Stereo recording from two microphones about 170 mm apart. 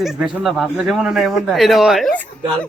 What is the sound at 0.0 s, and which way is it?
Speech, centre (ahead or behind).